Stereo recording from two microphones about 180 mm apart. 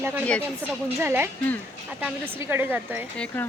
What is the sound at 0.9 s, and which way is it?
A woman's voice, 15° right (ahead or behind).